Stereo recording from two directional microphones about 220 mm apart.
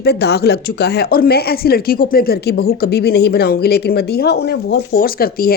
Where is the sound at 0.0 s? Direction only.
50° left (ahead or behind).